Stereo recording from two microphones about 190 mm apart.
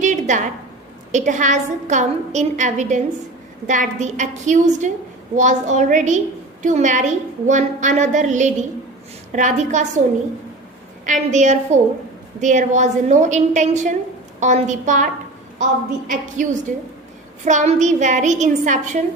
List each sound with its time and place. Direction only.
0.0 s a sound: 40° right (ahead or behind)
1.1 s a woman's voice: 40° right (ahead or behind)
11.0 s a woman's voice: 40° right (ahead or behind)